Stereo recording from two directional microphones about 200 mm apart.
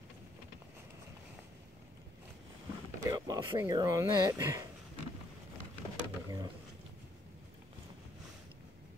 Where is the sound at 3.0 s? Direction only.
15° right (ahead or behind).